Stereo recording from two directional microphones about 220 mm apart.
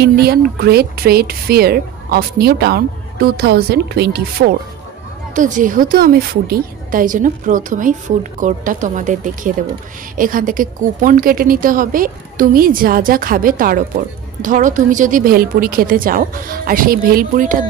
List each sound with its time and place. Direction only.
0.0 s speech: 45° right (ahead or behind)
5.3 s a woman's voice: 35° right (ahead or behind)